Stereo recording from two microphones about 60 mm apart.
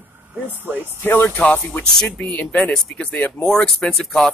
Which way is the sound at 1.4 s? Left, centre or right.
Left.